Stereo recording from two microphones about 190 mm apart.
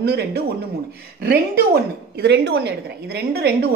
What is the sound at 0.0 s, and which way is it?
A woman's voice, 60° right (ahead or behind).